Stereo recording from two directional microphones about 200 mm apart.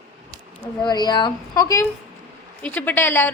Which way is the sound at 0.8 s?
20° left (ahead or behind).